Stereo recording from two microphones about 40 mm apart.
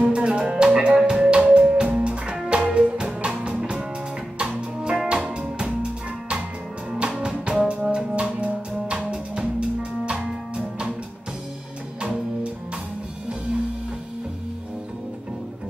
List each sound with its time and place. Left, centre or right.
0.0 s music: right
7.6 s brass instrument: right
8.4 s music: right
9.1 s music: right